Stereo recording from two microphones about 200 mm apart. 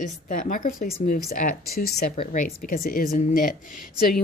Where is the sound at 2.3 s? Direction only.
45° left (ahead or behind).